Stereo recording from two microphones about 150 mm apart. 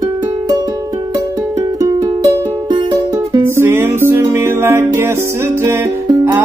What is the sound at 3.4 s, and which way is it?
Music, 15° right (ahead or behind).